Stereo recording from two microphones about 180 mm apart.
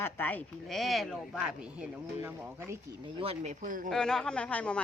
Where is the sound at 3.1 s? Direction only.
30° right (ahead or behind); by 3.9 s 50° right (ahead or behind).